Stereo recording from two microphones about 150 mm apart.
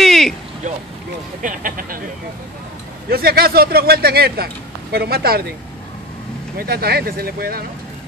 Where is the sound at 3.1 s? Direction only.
90° right.